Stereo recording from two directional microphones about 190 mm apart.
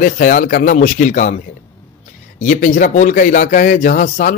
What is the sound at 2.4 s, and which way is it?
A man's voice, 45° left (ahead or behind).